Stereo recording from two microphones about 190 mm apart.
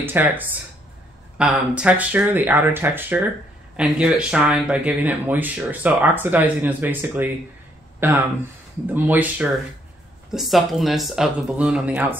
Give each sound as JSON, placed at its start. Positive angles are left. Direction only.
{"t": 0.0, "sound": "speech", "side_deg": -10}